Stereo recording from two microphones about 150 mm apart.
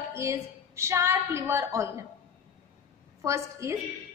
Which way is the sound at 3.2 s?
20° right (ahead or behind).